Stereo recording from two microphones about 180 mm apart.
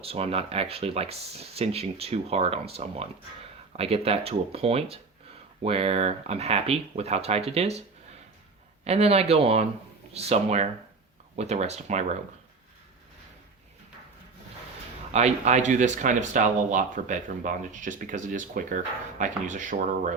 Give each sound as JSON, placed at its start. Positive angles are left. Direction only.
{"t": 0.0, "sound": "speech", "side_deg": -35}
{"t": 15.1, "sound": "speech", "side_deg": -40}